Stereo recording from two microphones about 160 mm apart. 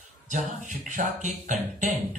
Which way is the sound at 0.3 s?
50° right (ahead or behind).